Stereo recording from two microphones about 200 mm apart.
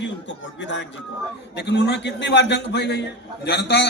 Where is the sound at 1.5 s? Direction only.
60° left (ahead or behind).